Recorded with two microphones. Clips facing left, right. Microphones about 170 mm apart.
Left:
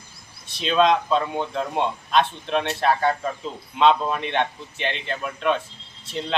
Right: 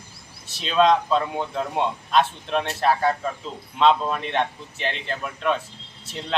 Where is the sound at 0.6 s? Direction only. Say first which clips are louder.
Even; centre (ahead or behind).